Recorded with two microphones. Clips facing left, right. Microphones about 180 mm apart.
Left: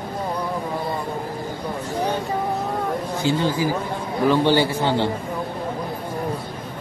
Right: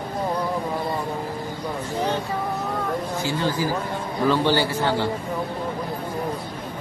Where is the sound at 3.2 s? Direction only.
20° left (ahead or behind).